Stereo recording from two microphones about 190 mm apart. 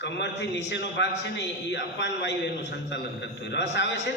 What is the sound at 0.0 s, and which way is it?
A man's voice, 70° left (ahead or behind).